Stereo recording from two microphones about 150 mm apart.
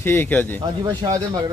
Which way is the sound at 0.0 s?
15° left (ahead or behind).